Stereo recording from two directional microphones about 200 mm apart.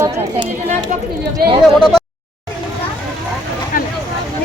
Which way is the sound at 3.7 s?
40° left (ahead or behind).